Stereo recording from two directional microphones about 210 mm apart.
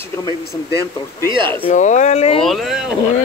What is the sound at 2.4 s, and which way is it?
Speech, centre (ahead or behind).